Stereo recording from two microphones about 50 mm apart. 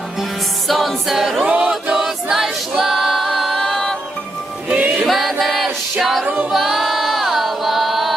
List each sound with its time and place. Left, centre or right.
0.7 s a capella: centre
1.5 s choir: right
1.9 s a capella: centre
4.7 s music: right
5.0 s music: centre
6.2 s music: right
6.5 s music: centre